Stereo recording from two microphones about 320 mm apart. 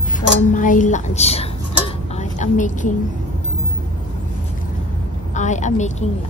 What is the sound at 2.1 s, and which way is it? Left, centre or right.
Music, left.